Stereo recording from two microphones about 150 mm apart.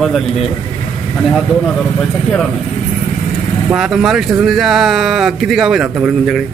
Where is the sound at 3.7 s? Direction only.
5° right (ahead or behind).